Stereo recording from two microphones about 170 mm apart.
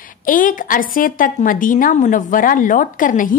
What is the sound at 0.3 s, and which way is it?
A woman's voice, 50° left (ahead or behind).